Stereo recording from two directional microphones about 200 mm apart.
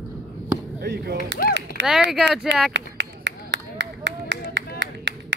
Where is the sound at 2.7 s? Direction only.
60° right (ahead or behind).